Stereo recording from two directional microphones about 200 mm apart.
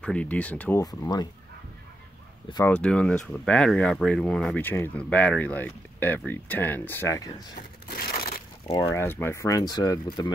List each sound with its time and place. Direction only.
0.0 s speech: 5° left (ahead or behind)
2.7 s speech: 5° left (ahead or behind)
7.9 s crushing: 50° left (ahead or behind)
8.7 s speech: 15° left (ahead or behind)